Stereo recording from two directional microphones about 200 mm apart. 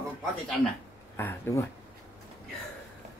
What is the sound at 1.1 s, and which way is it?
Speech, 10° left (ahead or behind).